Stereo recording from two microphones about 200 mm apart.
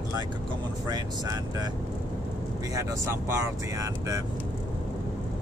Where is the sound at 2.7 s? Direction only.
15° right (ahead or behind).